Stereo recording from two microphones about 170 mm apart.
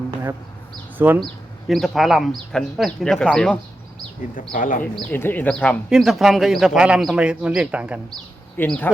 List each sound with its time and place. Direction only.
0.9 s speech: 10° right (ahead or behind)
1.2 s speech: centre (ahead or behind)
4.4 s speech: 50° left (ahead or behind)
4.8 s speech: 10° left (ahead or behind); by 8.0 s 5° right (ahead or behind)
8.5 s speech: 10° left (ahead or behind)